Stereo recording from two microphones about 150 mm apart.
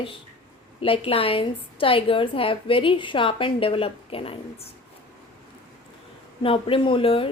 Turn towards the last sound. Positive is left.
turn(degrees=35)  # may be behind; listen again after turning